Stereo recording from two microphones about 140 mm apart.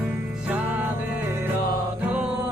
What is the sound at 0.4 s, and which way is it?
Music, 10° right (ahead or behind).